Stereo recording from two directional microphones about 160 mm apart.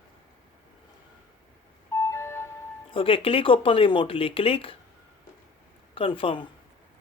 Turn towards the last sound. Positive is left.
turn(degrees=35)  # may be behind; listen again after turning